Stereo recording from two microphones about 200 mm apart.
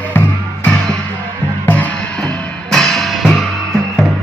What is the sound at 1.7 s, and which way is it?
Music, 5° left (ahead or behind).